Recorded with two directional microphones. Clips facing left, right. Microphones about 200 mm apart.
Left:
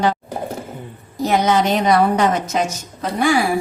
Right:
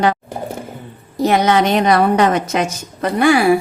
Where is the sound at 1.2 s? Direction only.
70° right (ahead or behind).